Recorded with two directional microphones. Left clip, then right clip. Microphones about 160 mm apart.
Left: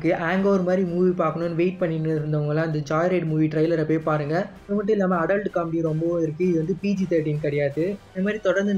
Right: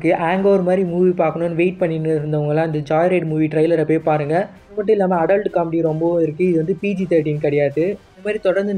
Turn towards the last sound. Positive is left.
turn(degrees=-20)  # may be behind; listen again after turning